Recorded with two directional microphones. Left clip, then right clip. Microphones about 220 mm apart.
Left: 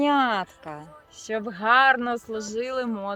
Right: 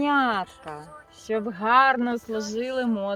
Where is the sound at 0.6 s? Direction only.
45° left (ahead or behind).